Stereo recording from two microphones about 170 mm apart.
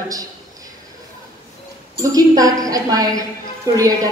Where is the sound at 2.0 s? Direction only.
20° right (ahead or behind).